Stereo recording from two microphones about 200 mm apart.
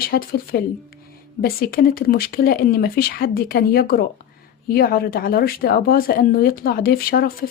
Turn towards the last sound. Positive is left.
turn(degrees=50)  # may be behind; listen again after turning